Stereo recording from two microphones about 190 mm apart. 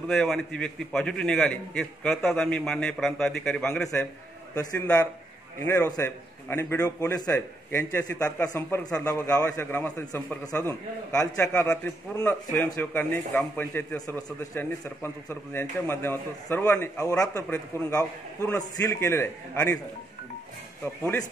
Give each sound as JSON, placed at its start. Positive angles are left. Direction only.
{"t": 0.1, "sound": "a man's voice", "side_deg": 5}